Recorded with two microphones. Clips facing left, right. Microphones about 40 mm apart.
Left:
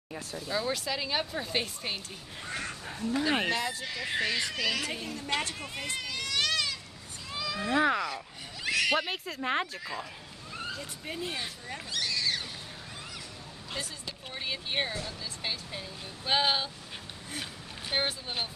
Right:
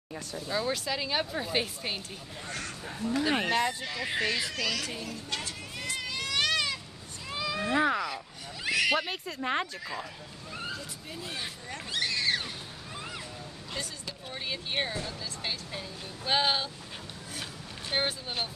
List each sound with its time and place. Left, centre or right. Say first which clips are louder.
0.1 s speech: even; centre
2.4 s speech: left 2 dB; centre
2.8 s speech: right 2 dB; centre
4.9 s speech: left 3 dB; left
5.9 s children playing: right 2 dB; centre
7.2 s cat: right 2 dB; centre
7.8 s speech: left 2 dB; centre
8.6 s speech: right 1 dB; centre
11.9 s a sound: right 2 dB; right
14.3 s speech: even; centre